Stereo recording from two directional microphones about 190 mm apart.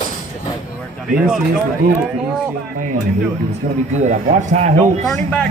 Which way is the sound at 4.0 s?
40° right (ahead or behind).